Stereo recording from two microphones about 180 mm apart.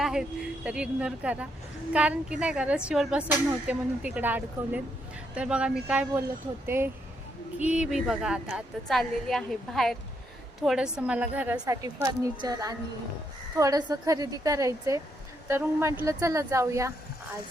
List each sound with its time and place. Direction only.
0.0 s a woman's voice: centre (ahead or behind)
11.6 s a woman's voice: 20° right (ahead or behind)